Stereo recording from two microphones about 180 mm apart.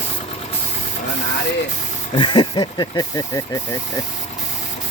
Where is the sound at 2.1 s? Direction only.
25° left (ahead or behind).